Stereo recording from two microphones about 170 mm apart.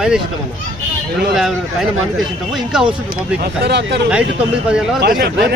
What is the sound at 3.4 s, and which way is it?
Speech, 70° right (ahead or behind).